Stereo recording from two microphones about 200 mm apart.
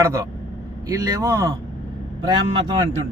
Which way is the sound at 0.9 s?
15° right (ahead or behind).